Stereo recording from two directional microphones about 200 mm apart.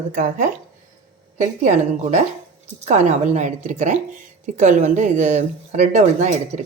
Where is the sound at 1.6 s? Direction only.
35° right (ahead or behind).